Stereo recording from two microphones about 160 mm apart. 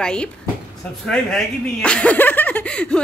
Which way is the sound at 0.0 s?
5° left (ahead or behind).